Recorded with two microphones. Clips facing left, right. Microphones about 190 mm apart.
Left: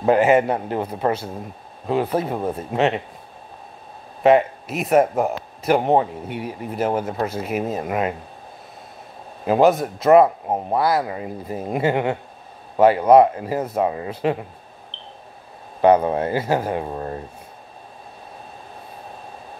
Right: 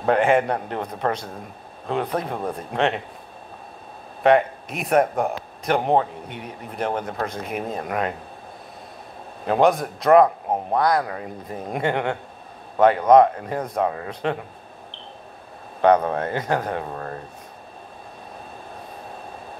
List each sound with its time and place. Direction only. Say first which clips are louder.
0.0 s a man's voice: left 3 dB; 5° left (ahead or behind)
4.2 s a man's voice: left 2 dB; 5° left (ahead or behind)
9.5 s a man's voice: left 2 dB; 5° left (ahead or behind)
15.8 s speech: left 2 dB; 10° left (ahead or behind)
16.9 s speech: left 3 dB; 20° left (ahead or behind)